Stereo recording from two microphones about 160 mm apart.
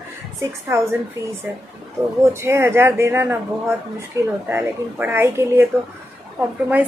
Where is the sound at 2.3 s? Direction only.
15° right (ahead or behind).